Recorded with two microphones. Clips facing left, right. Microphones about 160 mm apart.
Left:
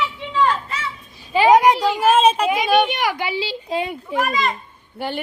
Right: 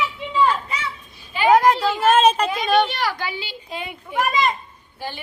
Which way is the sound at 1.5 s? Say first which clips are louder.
Even; 15° left (ahead or behind).